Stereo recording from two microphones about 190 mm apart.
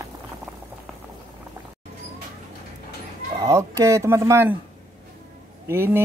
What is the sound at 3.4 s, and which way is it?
Speech, 15° right (ahead or behind).